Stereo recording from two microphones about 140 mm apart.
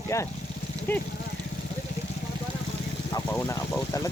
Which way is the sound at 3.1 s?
25° left (ahead or behind).